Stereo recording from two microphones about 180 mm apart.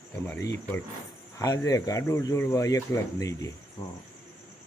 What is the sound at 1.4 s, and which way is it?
Speech, 20° left (ahead or behind).